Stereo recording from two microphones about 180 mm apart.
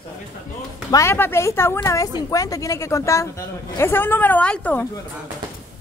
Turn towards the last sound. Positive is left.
turn(degrees=10)  # may be behind; listen again after turning